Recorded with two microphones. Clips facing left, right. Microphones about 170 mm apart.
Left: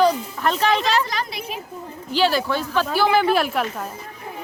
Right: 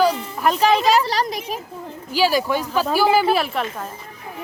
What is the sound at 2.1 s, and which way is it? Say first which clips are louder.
Speech: right 1 dB; 10° right (ahead or behind).